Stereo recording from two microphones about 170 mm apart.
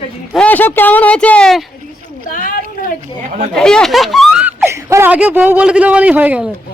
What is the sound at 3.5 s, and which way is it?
Speech, 5° left (ahead or behind).